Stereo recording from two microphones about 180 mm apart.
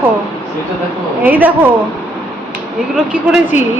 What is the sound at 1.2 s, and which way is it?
Speech, 10° right (ahead or behind).